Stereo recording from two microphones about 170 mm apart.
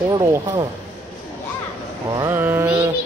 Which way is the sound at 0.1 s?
20° right (ahead or behind).